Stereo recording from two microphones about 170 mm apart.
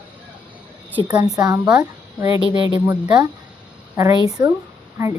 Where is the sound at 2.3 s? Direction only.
30° left (ahead or behind).